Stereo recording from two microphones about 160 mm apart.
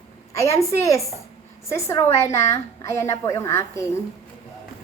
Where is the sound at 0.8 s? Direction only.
20° left (ahead or behind).